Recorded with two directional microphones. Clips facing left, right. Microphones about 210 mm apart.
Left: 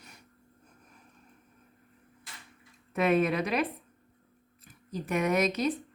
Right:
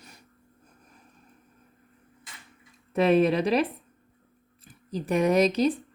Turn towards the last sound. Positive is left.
turn(degrees=-30)  # may be behind; listen again after turning